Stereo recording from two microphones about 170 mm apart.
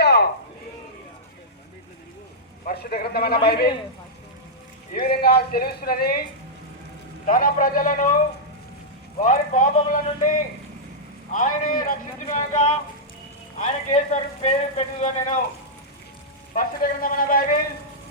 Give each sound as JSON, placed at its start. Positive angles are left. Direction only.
{"t": 0.0, "sound": "a sound", "side_deg": 75}
{"t": 2.6, "sound": "a man's voice", "side_deg": 65}
{"t": 4.9, "sound": "a man's voice", "side_deg": 65}
{"t": 7.3, "sound": "speech", "side_deg": 55}
{"t": 9.2, "sound": "a man's voice", "side_deg": 50}
{"t": 16.6, "sound": "a man's voice", "side_deg": 55}